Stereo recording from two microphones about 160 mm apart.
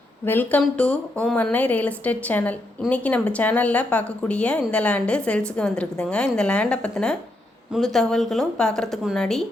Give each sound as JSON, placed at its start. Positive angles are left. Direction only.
{"t": 0.3, "sound": "a woman's voice", "side_deg": 10}